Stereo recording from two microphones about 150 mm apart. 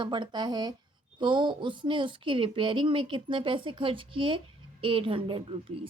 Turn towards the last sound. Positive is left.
turn(degrees=-35)  # may be behind; listen again after turning